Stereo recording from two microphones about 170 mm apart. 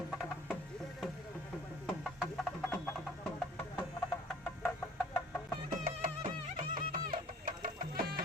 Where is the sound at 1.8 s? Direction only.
Centre (ahead or behind).